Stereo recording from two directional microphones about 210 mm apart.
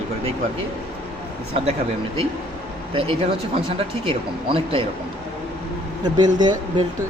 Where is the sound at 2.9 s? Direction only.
25° right (ahead or behind).